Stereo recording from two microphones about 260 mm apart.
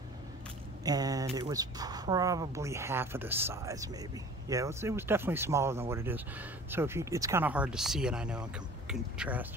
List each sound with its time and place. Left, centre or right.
0.8 s speech: centre